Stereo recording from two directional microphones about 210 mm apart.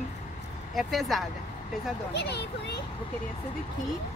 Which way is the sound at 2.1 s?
55° left (ahead or behind).